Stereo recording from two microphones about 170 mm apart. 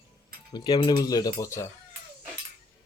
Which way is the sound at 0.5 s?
25° left (ahead or behind).